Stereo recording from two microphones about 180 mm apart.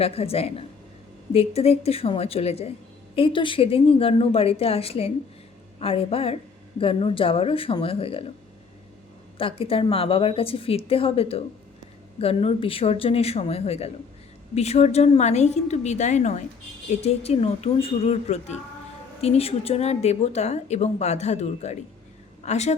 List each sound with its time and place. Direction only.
0.0 s speech: 35° left (ahead or behind)
9.4 s speech: 30° left (ahead or behind)